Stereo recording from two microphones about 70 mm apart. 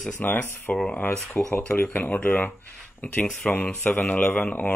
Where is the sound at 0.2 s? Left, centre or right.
Left.